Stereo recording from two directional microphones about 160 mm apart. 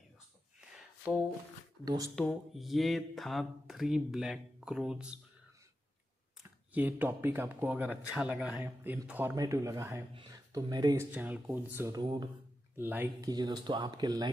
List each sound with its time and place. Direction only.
0.6 s a sound: 5° right (ahead or behind)
2.1 s speech: centre (ahead or behind)
6.4 s speech: 10° right (ahead or behind)
8.6 s speech: 15° right (ahead or behind)
11.1 s speech: 10° right (ahead or behind); by 12.3 s 25° right (ahead or behind)
12.7 s speech: 15° right (ahead or behind)
13.3 s speech: 25° right (ahead or behind)